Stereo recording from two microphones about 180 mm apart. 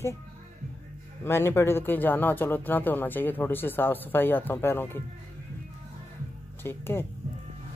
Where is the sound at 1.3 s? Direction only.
15° left (ahead or behind).